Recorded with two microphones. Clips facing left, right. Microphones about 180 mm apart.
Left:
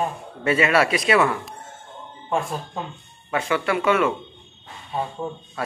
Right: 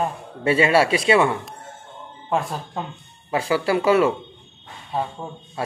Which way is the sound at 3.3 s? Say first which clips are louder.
Right 2 dB; 30° right (ahead or behind).